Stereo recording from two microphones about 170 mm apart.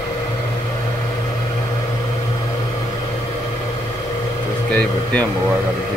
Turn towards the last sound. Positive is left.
turn(degrees=10)  # may be behind; listen again after turning